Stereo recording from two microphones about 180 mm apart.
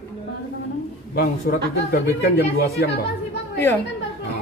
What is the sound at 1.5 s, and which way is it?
Speech, 55° left (ahead or behind).